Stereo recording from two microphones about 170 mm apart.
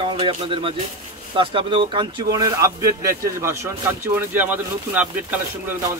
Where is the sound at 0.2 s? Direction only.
35° right (ahead or behind).